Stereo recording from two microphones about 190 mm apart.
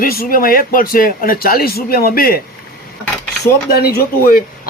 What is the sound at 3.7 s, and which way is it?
Speech, 55° left (ahead or behind).